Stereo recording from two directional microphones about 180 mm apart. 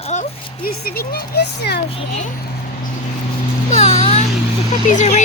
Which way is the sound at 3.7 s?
35° left (ahead or behind).